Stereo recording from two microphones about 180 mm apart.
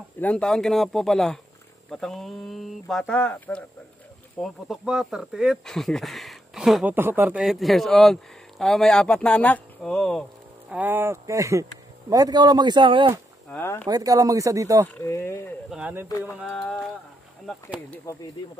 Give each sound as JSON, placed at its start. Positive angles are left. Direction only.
{"t": 0.2, "sound": "speech", "side_deg": 5}
{"t": 4.4, "sound": "speech", "side_deg": 0}
{"t": 10.7, "sound": "speech", "side_deg": -10}
{"t": 13.5, "sound": "speech", "side_deg": 10}
{"t": 13.8, "sound": "speech", "side_deg": -20}
{"t": 15.0, "sound": "speech", "side_deg": 15}
{"t": 15.7, "sound": "speech", "side_deg": -10}
{"t": 16.1, "sound": "speech", "side_deg": 20}
{"t": 16.4, "sound": "speech", "side_deg": 5}